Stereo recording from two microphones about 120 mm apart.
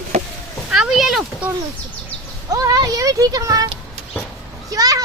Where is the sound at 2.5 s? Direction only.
30° right (ahead or behind).